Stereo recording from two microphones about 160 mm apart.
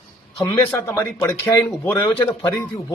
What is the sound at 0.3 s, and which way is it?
A man's voice, 20° left (ahead or behind).